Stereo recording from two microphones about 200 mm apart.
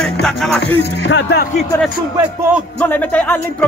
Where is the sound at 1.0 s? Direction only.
60° left (ahead or behind).